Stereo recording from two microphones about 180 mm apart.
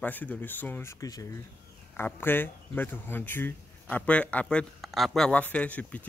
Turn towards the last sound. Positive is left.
turn(degrees=10)  # may be behind; listen again after turning